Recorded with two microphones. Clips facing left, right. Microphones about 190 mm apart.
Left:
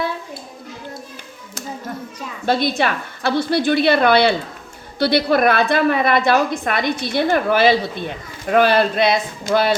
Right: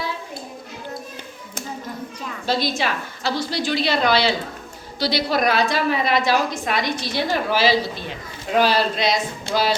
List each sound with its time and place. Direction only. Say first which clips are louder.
2.5 s a woman's voice: left 4 dB; 55° left (ahead or behind)